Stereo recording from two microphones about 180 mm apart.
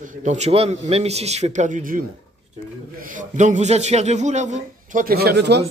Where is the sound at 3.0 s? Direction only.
45° right (ahead or behind); by 5.6 s 65° right (ahead or behind).